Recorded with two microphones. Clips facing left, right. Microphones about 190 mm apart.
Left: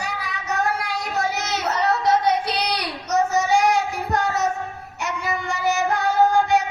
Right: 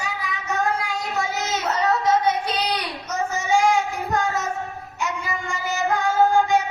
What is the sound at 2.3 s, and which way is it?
Child singing, 70° left (ahead or behind).